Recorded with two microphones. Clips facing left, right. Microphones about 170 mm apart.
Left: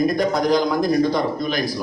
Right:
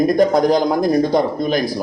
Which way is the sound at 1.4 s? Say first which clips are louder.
Right 5 dB; 50° right (ahead or behind).